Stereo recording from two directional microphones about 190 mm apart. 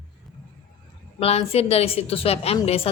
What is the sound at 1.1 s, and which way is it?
Speech, 30° left (ahead or behind).